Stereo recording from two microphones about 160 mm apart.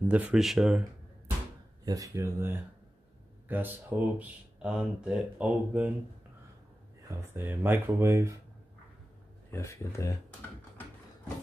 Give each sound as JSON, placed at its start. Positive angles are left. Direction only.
{"t": 0.1, "sound": "speech", "side_deg": -5}
{"t": 1.9, "sound": "speech", "side_deg": -20}
{"t": 7.2, "sound": "speech", "side_deg": -15}
{"t": 9.5, "sound": "speech", "side_deg": 20}